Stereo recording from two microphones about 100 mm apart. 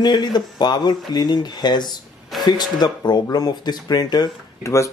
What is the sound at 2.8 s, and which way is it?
Speech, 45° left (ahead or behind).